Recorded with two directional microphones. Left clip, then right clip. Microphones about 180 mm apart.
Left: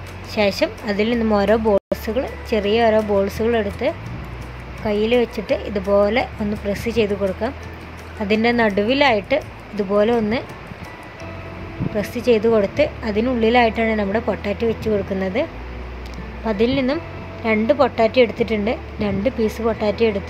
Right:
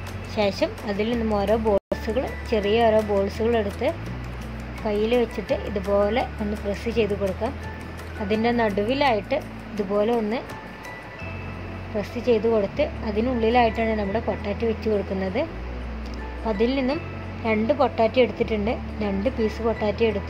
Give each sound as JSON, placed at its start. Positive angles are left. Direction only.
{"t": 0.3, "sound": "a woman's voice", "side_deg": 15}
{"t": 12.0, "sound": "a woman's voice", "side_deg": 20}
{"t": 16.4, "sound": "a woman's voice", "side_deg": 15}